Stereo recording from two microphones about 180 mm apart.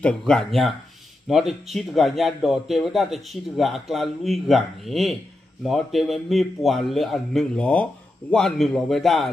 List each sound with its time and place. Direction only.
0.0 s speech: 5° left (ahead or behind)